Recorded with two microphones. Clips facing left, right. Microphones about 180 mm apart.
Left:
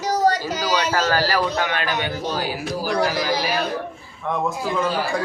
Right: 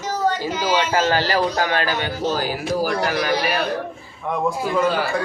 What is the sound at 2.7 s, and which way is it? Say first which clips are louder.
Speech: right 1 dB; 55° right (ahead or behind).